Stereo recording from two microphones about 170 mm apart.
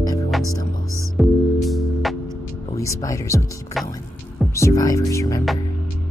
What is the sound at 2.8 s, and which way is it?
Speech, 20° left (ahead or behind).